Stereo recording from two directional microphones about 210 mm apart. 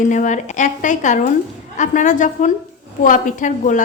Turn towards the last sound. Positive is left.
turn(degrees=40)  # may be behind; listen again after turning